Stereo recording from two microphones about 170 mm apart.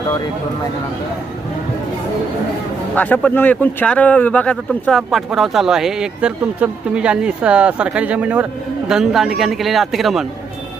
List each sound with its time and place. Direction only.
2.9 s speech: 10° left (ahead or behind)